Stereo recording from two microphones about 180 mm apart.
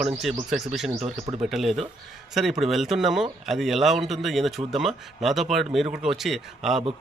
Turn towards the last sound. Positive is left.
turn(degrees=0)  # may be behind; listen again after turning